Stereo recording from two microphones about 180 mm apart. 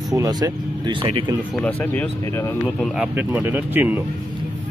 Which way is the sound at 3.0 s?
10° right (ahead or behind).